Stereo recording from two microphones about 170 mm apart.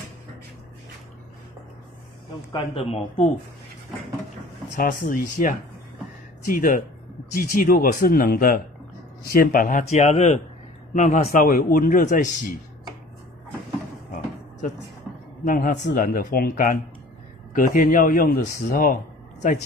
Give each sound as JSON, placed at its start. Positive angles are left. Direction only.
{"t": 2.3, "sound": "speech", "side_deg": 30}
{"t": 4.7, "sound": "a man's voice", "side_deg": 50}
{"t": 15.4, "sound": "a man's voice", "side_deg": 55}